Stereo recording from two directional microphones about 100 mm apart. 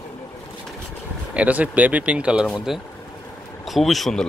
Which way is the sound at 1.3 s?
15° right (ahead or behind).